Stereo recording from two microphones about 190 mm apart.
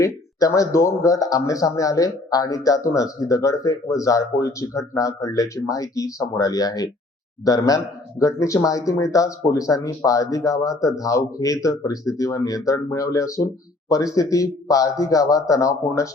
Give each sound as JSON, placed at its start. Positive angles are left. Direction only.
{"t": 0.0, "sound": "a man's voice", "side_deg": 20}